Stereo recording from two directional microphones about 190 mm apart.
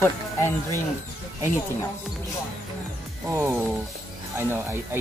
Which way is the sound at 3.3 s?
10° right (ahead or behind).